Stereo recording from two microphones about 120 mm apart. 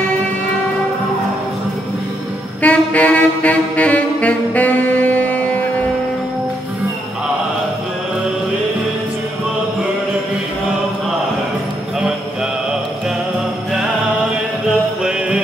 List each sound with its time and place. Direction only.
2.6 s saxophone: 10° left (ahead or behind)
15.0 s music: 5° right (ahead or behind)